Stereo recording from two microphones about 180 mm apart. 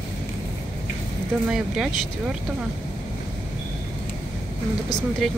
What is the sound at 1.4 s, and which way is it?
Speech, 5° right (ahead or behind).